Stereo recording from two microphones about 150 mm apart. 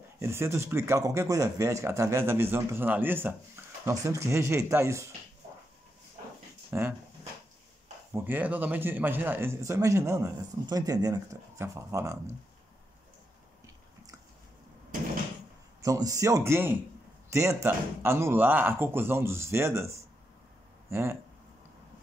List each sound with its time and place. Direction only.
0.2 s speech: 15° right (ahead or behind)
6.7 s speech: 15° right (ahead or behind)
8.1 s speech: 15° right (ahead or behind)
15.8 s speech: 20° right (ahead or behind)